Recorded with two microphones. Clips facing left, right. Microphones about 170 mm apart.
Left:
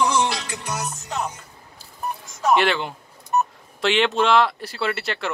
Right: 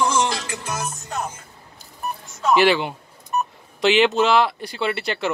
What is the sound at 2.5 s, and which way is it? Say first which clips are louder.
Speech: right 3 dB; 5° right (ahead or behind).